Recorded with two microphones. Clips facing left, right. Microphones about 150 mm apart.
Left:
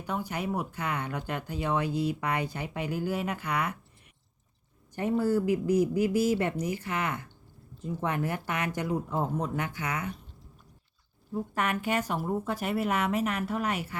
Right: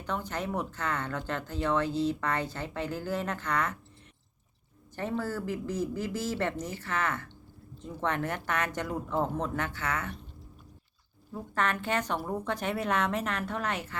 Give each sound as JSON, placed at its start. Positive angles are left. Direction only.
{"t": 0.0, "sound": "speech", "side_deg": 10}
{"t": 4.9, "sound": "speech", "side_deg": 15}
{"t": 11.5, "sound": "speech", "side_deg": 10}